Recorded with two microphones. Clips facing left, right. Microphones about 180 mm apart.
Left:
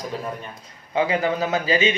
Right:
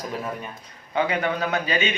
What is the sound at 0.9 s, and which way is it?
Speech, 30° left (ahead or behind).